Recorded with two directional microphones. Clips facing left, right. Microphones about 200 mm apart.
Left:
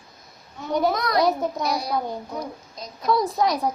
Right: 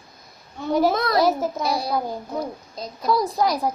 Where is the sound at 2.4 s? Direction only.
30° right (ahead or behind).